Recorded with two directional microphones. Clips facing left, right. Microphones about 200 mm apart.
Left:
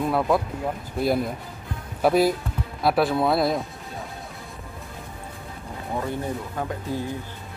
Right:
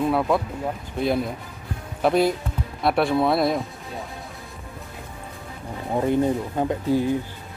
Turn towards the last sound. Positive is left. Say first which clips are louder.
# right 8 dB
turn(degrees=-15)  # may be behind; listen again after turning